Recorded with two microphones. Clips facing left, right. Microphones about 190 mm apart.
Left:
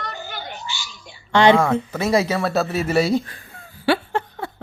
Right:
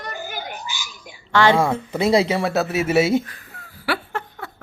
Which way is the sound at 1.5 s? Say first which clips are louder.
Left 1 dB; 15° right (ahead or behind).